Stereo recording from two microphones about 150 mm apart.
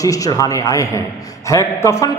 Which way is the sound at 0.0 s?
25° left (ahead or behind).